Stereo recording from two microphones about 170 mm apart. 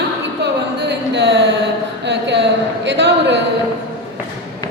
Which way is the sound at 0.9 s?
90° right.